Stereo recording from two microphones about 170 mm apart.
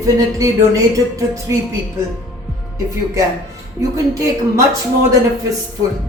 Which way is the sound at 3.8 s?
20° right (ahead or behind).